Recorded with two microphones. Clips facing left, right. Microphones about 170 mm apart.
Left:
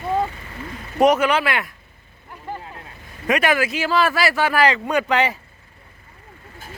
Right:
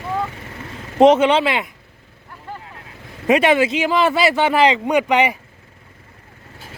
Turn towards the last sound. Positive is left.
turn(degrees=-15)  # may be behind; listen again after turning